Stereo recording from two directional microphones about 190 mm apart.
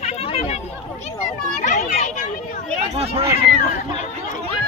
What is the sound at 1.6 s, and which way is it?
Children playing, 40° left (ahead or behind).